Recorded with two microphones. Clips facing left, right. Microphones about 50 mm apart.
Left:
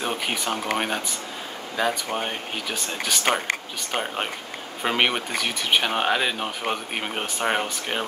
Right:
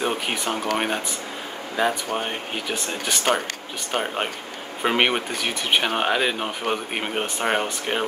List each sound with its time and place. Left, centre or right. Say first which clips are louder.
0.0 s speech: right 2 dB; centre